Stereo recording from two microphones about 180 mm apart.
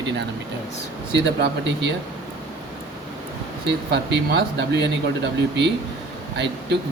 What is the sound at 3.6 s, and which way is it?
Speech, 70° right (ahead or behind).